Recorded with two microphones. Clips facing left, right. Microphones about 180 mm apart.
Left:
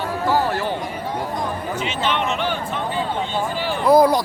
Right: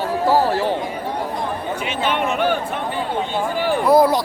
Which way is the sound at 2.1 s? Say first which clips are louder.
Right 4 dB; 50° right (ahead or behind).